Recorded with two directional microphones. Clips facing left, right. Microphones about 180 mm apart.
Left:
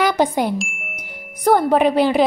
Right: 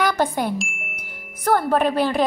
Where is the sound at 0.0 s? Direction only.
10° left (ahead or behind).